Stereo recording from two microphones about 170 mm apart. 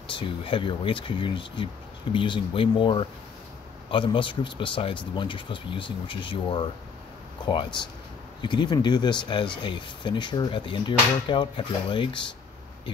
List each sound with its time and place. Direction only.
0.1 s speech: 30° left (ahead or behind)